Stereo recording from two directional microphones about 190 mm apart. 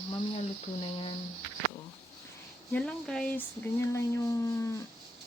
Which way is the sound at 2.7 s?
5° left (ahead or behind).